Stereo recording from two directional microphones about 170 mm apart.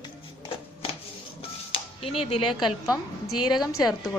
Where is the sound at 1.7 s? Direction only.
35° left (ahead or behind).